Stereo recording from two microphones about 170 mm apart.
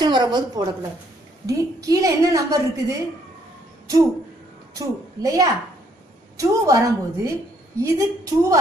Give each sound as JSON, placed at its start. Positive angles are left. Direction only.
{"t": 0.0, "sound": "a woman's voice", "side_deg": -25}
{"t": 4.7, "sound": "a woman's voice", "side_deg": -20}